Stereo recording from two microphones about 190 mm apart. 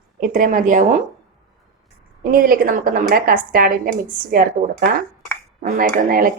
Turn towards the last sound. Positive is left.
turn(degrees=-50)  # may be behind; listen again after turning